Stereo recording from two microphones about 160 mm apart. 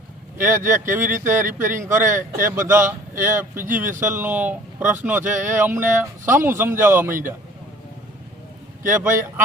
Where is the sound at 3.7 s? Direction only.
55° right (ahead or behind).